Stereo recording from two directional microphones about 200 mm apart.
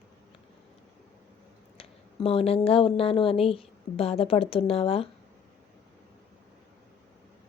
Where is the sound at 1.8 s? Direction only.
30° left (ahead or behind).